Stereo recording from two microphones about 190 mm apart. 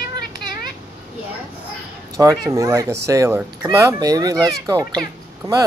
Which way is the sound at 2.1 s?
15° right (ahead or behind).